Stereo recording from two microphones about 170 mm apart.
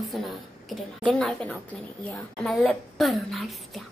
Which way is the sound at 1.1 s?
5° left (ahead or behind).